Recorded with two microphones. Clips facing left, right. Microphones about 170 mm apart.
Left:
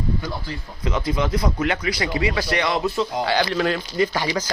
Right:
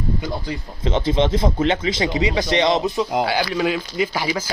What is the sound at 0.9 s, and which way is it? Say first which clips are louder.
A man's voice: right 4 dB; 25° right (ahead or behind).